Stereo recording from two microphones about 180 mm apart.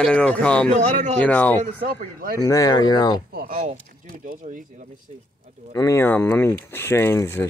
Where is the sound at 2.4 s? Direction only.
20° left (ahead or behind).